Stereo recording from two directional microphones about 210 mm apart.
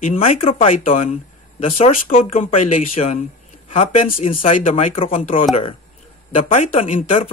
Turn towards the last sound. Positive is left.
turn(degrees=35)  # may be behind; listen again after turning